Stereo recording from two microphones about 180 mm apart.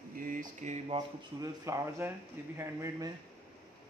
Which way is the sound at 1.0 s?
20° right (ahead or behind).